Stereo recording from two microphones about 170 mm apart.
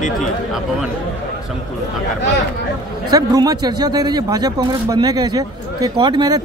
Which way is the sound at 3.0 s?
20° right (ahead or behind).